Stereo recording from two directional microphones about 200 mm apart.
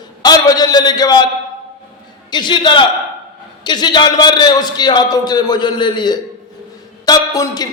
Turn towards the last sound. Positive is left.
turn(degrees=20)  # may be behind; listen again after turning